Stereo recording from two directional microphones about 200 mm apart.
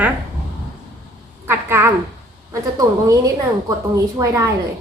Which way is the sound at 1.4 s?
10° right (ahead or behind).